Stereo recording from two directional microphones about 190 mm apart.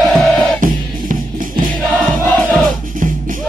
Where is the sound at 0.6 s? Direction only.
45° right (ahead or behind).